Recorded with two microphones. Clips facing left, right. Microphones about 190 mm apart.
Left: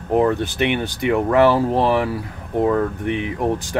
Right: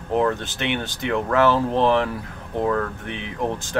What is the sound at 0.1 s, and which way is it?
Speech, 15° left (ahead or behind).